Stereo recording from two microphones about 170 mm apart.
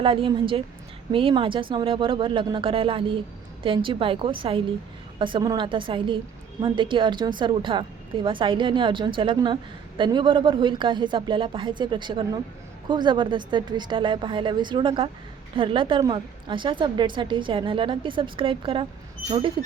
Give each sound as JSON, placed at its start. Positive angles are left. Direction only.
{"t": 0.0, "sound": "a woman's voice", "side_deg": -30}